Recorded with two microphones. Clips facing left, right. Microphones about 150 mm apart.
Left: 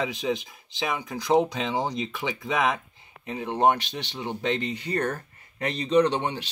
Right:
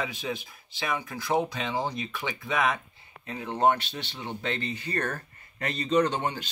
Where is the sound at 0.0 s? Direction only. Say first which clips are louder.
Left 5 dB; 15° left (ahead or behind).